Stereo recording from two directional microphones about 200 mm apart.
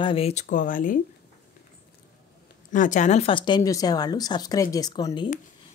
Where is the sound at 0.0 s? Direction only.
30° left (ahead or behind).